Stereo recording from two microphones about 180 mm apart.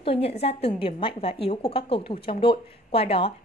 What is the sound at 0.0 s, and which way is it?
A woman's voice, 30° left (ahead or behind).